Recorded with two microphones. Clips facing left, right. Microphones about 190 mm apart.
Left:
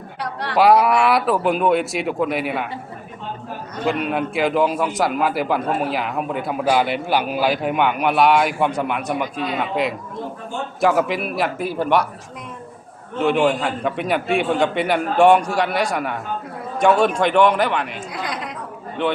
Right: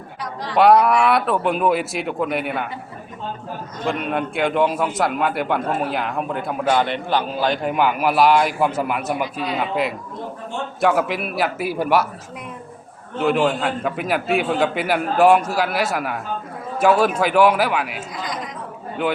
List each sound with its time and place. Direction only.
0.2 s speech: 65° left (ahead or behind)
0.5 s a man's voice: centre (ahead or behind)
3.8 s a man's voice: centre (ahead or behind)
13.2 s a man's voice: centre (ahead or behind)
18.1 s a woman's voice: 65° left (ahead or behind)